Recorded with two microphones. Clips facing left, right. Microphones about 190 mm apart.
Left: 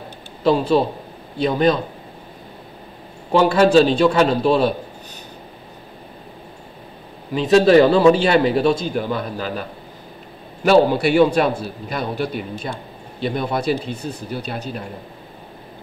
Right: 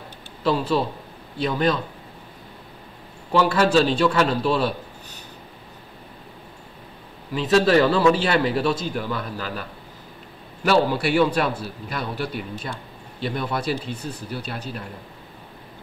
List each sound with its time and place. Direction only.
0.4 s a man's voice: 20° left (ahead or behind)
3.3 s a man's voice: 20° left (ahead or behind)
7.3 s a man's voice: 20° left (ahead or behind)